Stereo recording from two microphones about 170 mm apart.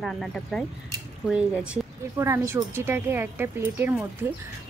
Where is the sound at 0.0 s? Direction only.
Centre (ahead or behind).